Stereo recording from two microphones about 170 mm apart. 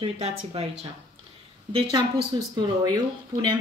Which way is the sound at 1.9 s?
25° right (ahead or behind).